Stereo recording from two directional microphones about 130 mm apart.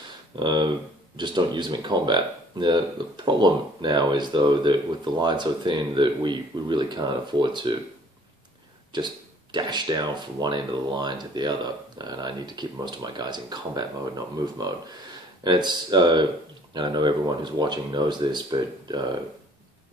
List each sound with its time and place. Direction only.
0.4 s speech: 35° right (ahead or behind)
8.9 s speech: 35° right (ahead or behind)